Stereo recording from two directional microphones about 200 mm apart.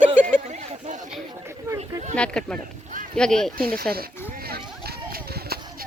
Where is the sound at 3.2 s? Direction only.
5° left (ahead or behind).